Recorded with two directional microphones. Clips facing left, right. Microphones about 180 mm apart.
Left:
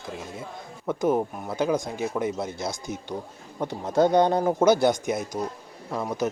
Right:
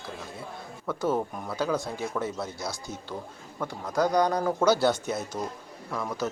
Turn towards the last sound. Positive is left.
turn(degrees=20)  # may be behind; listen again after turning